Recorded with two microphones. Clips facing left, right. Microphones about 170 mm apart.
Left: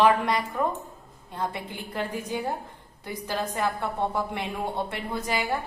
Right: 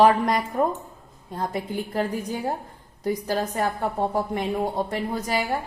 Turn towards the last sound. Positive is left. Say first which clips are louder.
# right 2 dB
turn(degrees=-40)  # may be behind; listen again after turning